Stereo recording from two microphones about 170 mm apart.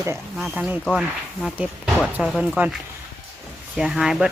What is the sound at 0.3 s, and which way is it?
Speech, 5° right (ahead or behind).